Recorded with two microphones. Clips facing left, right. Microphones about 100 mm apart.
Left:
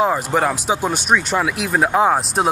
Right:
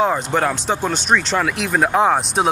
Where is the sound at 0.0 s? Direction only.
5° left (ahead or behind).